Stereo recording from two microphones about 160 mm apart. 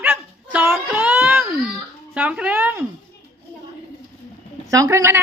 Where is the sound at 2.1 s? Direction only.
10° right (ahead or behind).